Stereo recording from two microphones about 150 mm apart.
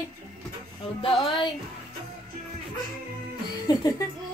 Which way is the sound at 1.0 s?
35° left (ahead or behind).